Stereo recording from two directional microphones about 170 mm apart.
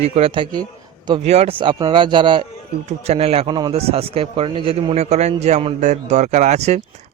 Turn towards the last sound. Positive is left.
turn(degrees=-40)  # may be behind; listen again after turning